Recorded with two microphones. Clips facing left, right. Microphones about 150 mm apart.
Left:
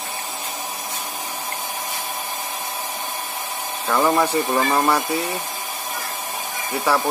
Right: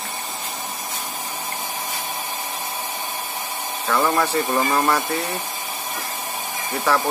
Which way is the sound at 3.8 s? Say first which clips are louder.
Left 2 dB; 10° left (ahead or behind).